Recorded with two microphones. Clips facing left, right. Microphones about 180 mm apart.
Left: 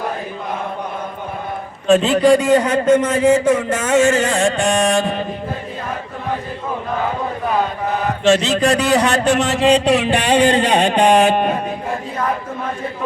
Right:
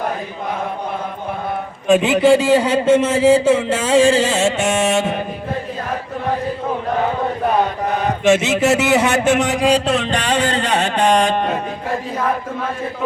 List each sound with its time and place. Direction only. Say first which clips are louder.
1.9 s music: even; 15° right (ahead or behind)
8.2 s a man's voice: even; 20° right (ahead or behind); by 11.5 s 10° left (ahead or behind)